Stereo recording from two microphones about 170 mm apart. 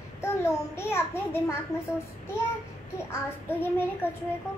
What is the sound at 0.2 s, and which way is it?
A child's voice, 15° left (ahead or behind).